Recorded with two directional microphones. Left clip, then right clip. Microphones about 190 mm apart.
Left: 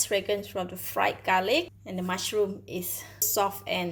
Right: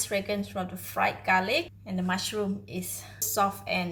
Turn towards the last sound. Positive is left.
turn(degrees=45)  # may be behind; listen again after turning